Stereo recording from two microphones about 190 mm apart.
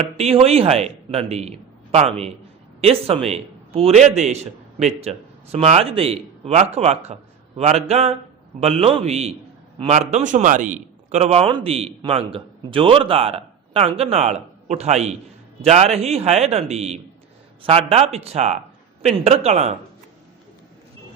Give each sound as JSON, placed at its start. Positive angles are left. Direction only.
{"t": 0.2, "sound": "a man's voice", "side_deg": -30}